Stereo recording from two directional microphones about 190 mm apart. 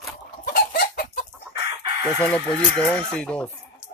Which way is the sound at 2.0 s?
15° right (ahead or behind).